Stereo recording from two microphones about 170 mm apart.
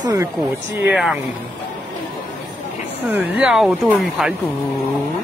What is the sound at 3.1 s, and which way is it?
Speech, 10° right (ahead or behind).